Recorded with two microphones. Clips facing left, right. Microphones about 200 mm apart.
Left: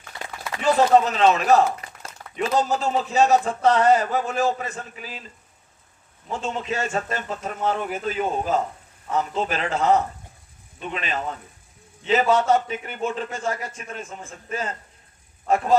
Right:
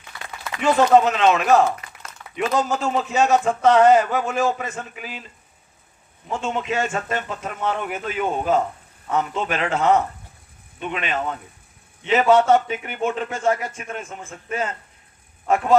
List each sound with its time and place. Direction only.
0.5 s a man's voice: 35° left (ahead or behind)
6.3 s a man's voice: 35° left (ahead or behind)